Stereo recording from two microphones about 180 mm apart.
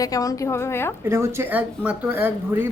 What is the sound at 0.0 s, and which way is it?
Speech, 20° left (ahead or behind).